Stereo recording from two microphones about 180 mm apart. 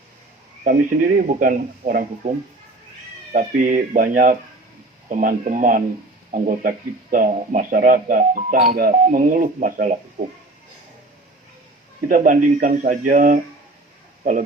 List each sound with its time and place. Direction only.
0.6 s speech: 50° right (ahead or behind)
3.3 s speech: 45° right (ahead or behind)
12.0 s speech: 50° right (ahead or behind)